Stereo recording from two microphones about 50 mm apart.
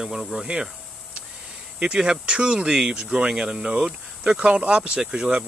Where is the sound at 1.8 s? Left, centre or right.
Centre.